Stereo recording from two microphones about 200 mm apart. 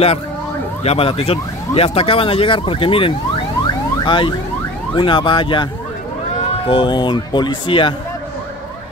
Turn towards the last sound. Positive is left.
turn(degrees=25)  # may be behind; listen again after turning